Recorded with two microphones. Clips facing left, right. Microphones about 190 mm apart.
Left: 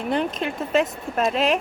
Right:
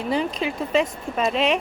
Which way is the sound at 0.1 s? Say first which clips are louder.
Even; centre (ahead or behind).